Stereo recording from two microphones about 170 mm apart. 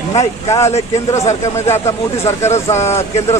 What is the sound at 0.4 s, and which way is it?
Speech, 20° left (ahead or behind).